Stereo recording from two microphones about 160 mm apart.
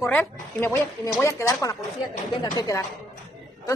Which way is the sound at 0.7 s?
20° left (ahead or behind).